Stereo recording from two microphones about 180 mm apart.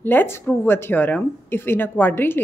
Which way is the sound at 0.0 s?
10° left (ahead or behind).